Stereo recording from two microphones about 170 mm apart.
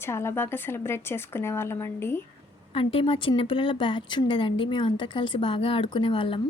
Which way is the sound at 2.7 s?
30° left (ahead or behind).